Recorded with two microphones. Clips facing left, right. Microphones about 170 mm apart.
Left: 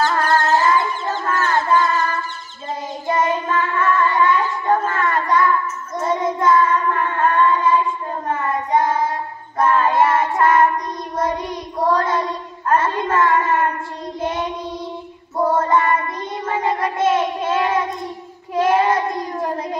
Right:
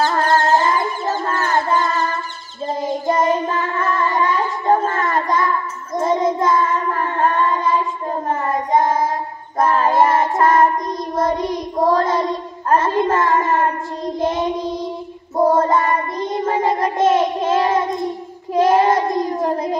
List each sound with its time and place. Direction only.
0.0 s music: 30° right (ahead or behind)
1.2 s a sound: 30° right (ahead or behind)
3.1 s child singing: 35° right (ahead or behind)